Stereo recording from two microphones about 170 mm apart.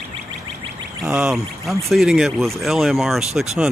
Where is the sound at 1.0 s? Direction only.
5° right (ahead or behind).